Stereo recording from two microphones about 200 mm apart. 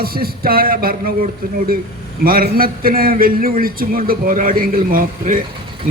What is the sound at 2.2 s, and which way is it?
A man's voice, 45° right (ahead or behind).